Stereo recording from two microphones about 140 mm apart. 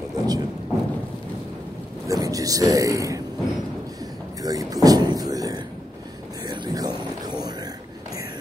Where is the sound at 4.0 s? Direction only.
25° right (ahead or behind).